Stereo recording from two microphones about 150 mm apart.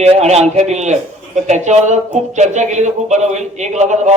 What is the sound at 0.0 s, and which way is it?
Speech, 45° right (ahead or behind).